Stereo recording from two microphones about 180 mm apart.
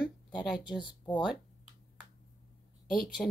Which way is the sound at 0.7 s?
25° left (ahead or behind).